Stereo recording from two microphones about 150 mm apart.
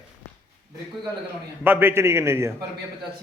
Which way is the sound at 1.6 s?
15° right (ahead or behind).